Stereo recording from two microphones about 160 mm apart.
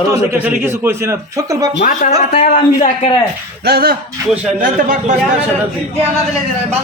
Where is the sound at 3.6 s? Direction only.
75° right (ahead or behind).